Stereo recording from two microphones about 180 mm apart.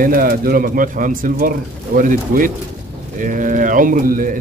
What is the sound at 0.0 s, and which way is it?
Speech, 50° right (ahead or behind).